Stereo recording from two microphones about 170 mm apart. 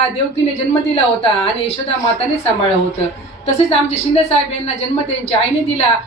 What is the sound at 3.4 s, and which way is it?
A woman's voice, 40° left (ahead or behind).